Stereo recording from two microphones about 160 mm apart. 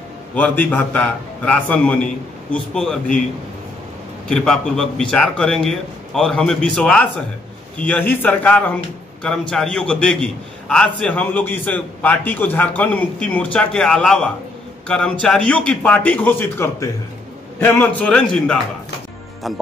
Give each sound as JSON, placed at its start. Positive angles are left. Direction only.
{"t": 0.3, "sound": "a man's voice", "side_deg": 10}
{"t": 4.3, "sound": "a man's voice", "side_deg": 5}